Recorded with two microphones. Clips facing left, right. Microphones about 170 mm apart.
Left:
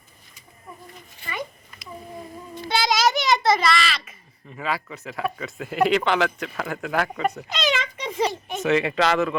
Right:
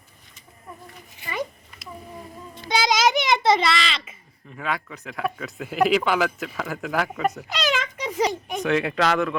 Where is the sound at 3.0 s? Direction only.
20° right (ahead or behind).